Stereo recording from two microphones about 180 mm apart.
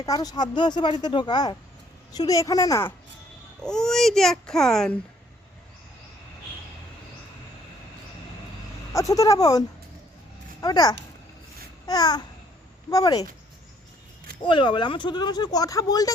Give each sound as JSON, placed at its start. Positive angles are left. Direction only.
{"t": 0.0, "sound": "speech", "side_deg": 20}
{"t": 3.6, "sound": "speech", "side_deg": 5}
{"t": 8.9, "sound": "speech", "side_deg": 15}
{"t": 14.4, "sound": "speech", "side_deg": 25}